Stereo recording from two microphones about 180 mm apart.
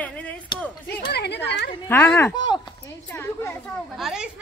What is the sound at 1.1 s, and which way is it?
Speech, 65° left (ahead or behind).